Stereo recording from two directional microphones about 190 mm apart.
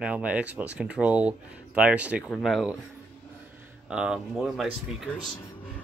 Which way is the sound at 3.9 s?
5° right (ahead or behind).